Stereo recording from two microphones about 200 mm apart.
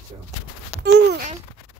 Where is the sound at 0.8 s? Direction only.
60° right (ahead or behind).